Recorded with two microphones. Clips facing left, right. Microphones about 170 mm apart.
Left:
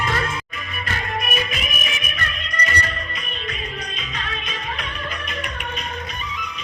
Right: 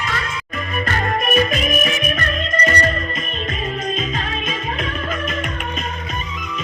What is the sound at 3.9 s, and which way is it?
Music, 45° right (ahead or behind).